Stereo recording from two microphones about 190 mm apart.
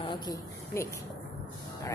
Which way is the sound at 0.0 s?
25° left (ahead or behind).